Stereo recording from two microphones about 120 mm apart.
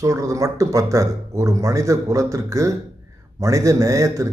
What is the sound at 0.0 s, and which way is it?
Speech, 25° right (ahead or behind).